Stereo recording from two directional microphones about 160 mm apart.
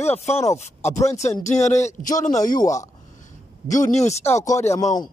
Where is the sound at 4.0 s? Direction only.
45° left (ahead or behind).